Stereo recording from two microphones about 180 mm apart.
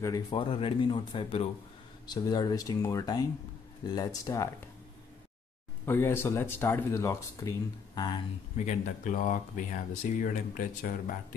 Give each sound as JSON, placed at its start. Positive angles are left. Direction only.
{"t": 0.0, "sound": "speech", "side_deg": 25}
{"t": 5.9, "sound": "speech", "side_deg": 15}
{"t": 8.5, "sound": "speech", "side_deg": 45}